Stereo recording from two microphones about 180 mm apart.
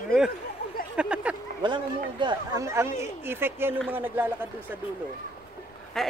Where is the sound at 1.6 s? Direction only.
25° right (ahead or behind).